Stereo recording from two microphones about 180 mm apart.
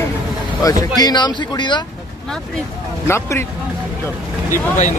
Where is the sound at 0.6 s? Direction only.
20° left (ahead or behind).